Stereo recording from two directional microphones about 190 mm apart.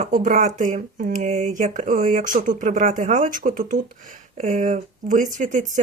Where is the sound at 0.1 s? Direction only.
45° right (ahead or behind).